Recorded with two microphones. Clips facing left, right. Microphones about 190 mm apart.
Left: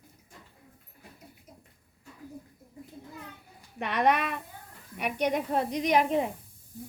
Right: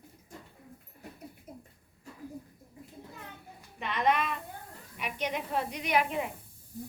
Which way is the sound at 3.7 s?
60° left (ahead or behind).